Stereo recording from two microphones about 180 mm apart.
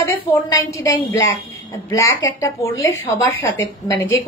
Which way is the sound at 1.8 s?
15° left (ahead or behind).